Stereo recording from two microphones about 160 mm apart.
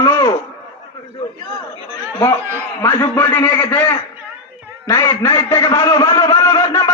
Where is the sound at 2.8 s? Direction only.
15° left (ahead or behind).